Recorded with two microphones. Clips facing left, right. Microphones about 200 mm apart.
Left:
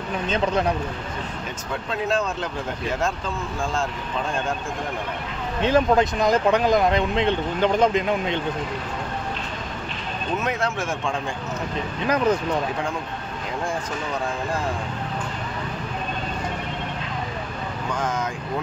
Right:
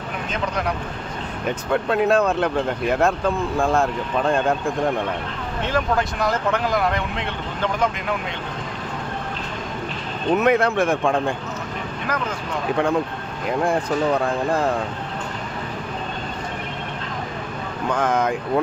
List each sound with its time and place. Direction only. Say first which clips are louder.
0.3 s speech: left 3 dB; 25° left (ahead or behind)
1.7 s speech: right 7 dB; 60° right (ahead or behind)
5.6 s speech: left 4 dB; 20° left (ahead or behind)
10.3 s speech: right 8 dB; 60° right (ahead or behind)
13.5 s speech: right 8 dB; 60° right (ahead or behind)
17.9 s speech: right 7 dB; 60° right (ahead or behind)